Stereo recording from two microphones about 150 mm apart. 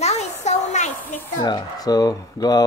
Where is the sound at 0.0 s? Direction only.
45° left (ahead or behind).